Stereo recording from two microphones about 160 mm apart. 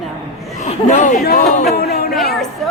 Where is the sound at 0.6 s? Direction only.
45° left (ahead or behind).